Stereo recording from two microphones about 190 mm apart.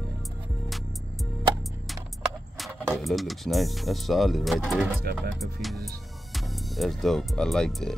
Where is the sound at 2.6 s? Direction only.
Centre (ahead or behind).